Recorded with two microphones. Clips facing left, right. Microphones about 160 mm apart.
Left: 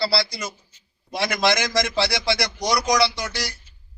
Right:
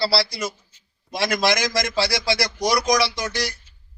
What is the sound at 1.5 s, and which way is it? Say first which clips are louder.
Speech: even; 10° right (ahead or behind).